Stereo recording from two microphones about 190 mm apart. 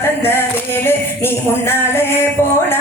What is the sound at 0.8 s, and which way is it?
Music, 10° left (ahead or behind).